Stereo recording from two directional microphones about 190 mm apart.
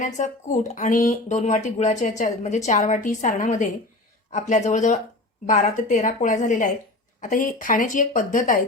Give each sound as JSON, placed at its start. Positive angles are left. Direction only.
{"t": 0.0, "sound": "speech", "side_deg": 40}